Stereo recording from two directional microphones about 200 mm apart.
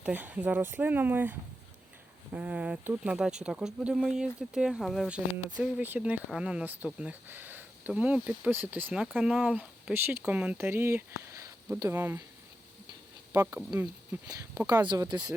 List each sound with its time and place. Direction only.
0.0 s speech: 10° right (ahead or behind)
13.3 s speech: 10° right (ahead or behind)